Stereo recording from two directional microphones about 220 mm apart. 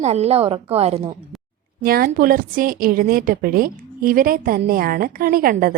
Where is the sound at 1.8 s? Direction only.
40° right (ahead or behind).